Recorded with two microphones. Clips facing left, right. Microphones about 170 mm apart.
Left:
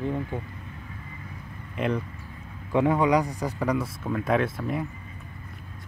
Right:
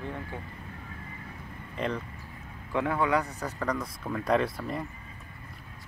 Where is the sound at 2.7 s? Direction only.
20° left (ahead or behind); by 4.8 s centre (ahead or behind).